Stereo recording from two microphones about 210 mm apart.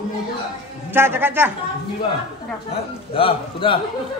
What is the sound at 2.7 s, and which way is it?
A man's voice, 25° left (ahead or behind).